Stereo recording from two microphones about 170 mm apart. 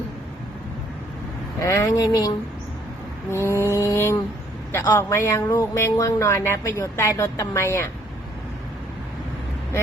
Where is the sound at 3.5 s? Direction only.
15° left (ahead or behind).